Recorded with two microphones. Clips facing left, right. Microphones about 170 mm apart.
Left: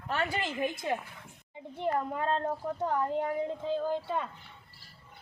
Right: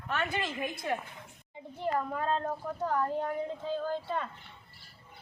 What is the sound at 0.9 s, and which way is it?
A child's voice, 20° left (ahead or behind).